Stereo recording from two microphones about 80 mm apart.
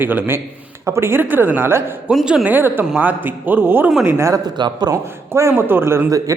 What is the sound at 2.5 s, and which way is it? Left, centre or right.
A man's voice, right.